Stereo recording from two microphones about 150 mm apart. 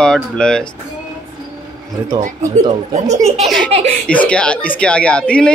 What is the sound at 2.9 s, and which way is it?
Speech, 50° right (ahead or behind).